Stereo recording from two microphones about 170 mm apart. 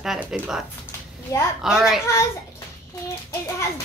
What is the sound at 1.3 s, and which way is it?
Speech, 15° left (ahead or behind).